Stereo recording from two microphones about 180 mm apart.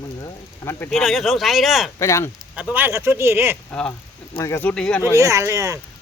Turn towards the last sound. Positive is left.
turn(degrees=-20)  # may be behind; listen again after turning